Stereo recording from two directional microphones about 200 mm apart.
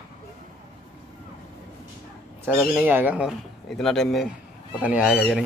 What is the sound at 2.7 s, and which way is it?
Speech, 10° right (ahead or behind).